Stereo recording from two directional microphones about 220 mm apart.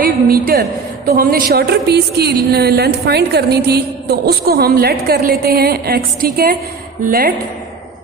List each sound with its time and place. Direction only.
0.0 s a woman's voice: 45° right (ahead or behind)